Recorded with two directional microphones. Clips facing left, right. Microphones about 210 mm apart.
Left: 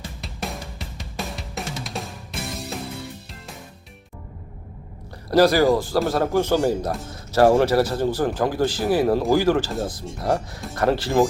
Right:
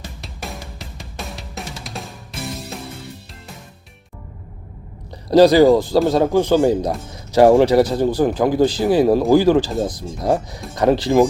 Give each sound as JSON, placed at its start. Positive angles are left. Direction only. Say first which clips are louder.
{"t": 0.2, "sound": "music", "louder": "left 2 dB", "side_deg": 0}
{"t": 5.3, "sound": "speech", "louder": "right 6 dB", "side_deg": -20}